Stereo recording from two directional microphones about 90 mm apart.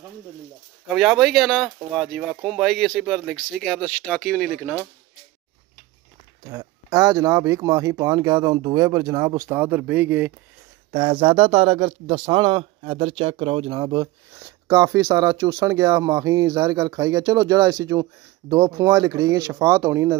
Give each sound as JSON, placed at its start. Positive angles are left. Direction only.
{"t": 0.8, "sound": "speech", "side_deg": 0}
{"t": 6.5, "sound": "speech", "side_deg": -40}
{"t": 9.6, "sound": "speech", "side_deg": -20}
{"t": 10.9, "sound": "speech", "side_deg": -60}
{"t": 13.7, "sound": "speech", "side_deg": -55}
{"t": 14.7, "sound": "speech", "side_deg": -35}